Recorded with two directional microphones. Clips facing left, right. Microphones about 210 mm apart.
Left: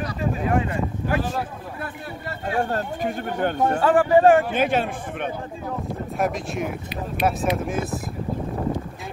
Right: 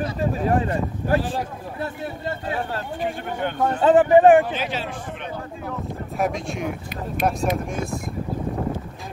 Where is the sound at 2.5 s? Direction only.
45° left (ahead or behind).